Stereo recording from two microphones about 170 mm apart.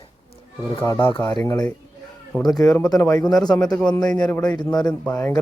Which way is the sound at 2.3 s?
Centre (ahead or behind).